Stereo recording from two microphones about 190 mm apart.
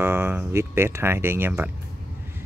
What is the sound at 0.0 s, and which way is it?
Speech, 10° right (ahead or behind).